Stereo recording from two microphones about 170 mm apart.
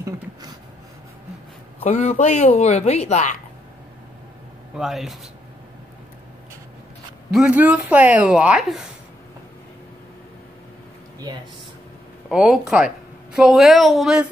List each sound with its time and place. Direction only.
0.0 s a sound: 25° right (ahead or behind)
1.8 s speech: 40° left (ahead or behind)
4.7 s speech: centre (ahead or behind)
7.3 s a woman's voice: 5° right (ahead or behind)
11.3 s speech: 20° right (ahead or behind)
12.3 s speech: 5° right (ahead or behind)